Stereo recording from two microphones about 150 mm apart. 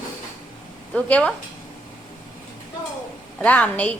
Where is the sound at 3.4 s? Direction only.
10° left (ahead or behind).